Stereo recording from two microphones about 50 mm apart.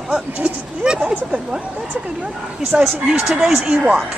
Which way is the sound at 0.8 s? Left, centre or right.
Centre.